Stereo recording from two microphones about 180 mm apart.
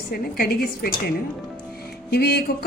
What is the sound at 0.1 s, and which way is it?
A woman's voice, 55° left (ahead or behind).